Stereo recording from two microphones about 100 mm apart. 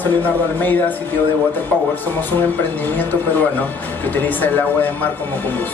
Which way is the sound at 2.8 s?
20° left (ahead or behind).